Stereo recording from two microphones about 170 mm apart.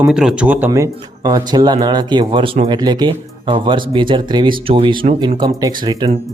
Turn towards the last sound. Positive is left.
turn(degrees=-25)  # may be behind; listen again after turning